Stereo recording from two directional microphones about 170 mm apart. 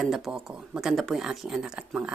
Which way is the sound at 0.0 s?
Centre (ahead or behind).